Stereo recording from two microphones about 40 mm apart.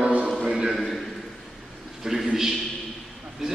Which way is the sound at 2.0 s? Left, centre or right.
Centre.